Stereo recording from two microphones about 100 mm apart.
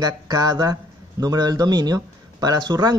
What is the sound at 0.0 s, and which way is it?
Speech, 40° right (ahead or behind).